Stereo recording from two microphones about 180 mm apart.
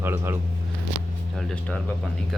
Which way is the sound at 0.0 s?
15° right (ahead or behind).